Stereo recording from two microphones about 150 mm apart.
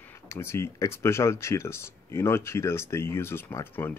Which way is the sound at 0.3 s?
15° left (ahead or behind).